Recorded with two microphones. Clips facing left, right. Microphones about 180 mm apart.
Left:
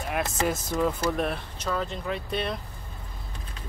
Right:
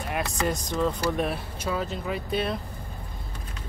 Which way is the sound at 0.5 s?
5° left (ahead or behind).